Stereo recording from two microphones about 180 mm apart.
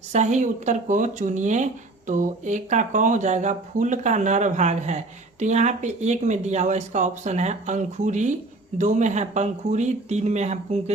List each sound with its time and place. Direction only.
0.1 s speech: 40° right (ahead or behind)